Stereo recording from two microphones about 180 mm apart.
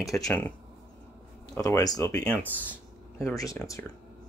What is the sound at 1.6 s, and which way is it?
Speech, 20° left (ahead or behind).